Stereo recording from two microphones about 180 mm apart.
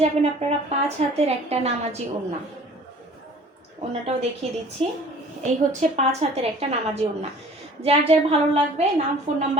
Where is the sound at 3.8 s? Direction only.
35° right (ahead or behind).